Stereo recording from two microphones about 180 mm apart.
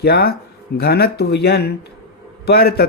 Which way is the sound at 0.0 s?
60° left (ahead or behind).